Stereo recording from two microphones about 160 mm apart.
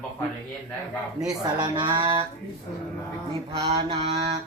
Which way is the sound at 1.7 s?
30° right (ahead or behind).